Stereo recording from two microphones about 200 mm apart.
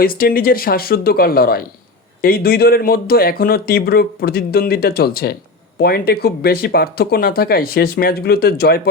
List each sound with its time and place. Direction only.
0.0 s speech: 45° left (ahead or behind)